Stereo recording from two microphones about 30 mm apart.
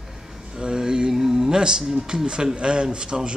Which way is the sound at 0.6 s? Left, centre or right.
Right.